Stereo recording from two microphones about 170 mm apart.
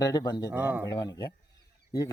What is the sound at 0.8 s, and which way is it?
Speech, 25° left (ahead or behind).